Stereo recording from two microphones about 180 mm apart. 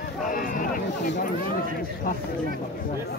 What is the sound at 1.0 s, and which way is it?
Speech, 45° left (ahead or behind).